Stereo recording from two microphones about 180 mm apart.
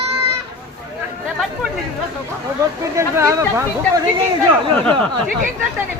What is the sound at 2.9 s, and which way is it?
Speech, 15° right (ahead or behind).